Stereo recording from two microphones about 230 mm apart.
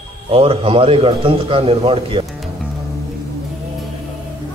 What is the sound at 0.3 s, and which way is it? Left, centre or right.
A man's voice, right.